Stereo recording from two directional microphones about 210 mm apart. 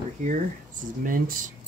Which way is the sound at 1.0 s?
40° right (ahead or behind).